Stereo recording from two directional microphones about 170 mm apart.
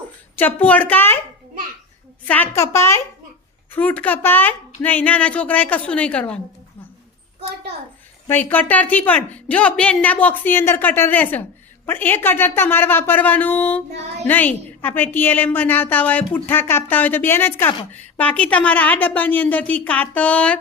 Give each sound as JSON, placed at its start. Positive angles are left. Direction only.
{"t": 0.3, "sound": "a woman's voice", "side_deg": 10}
{"t": 2.2, "sound": "a woman's voice", "side_deg": 10}
{"t": 8.3, "sound": "a woman's voice", "side_deg": 10}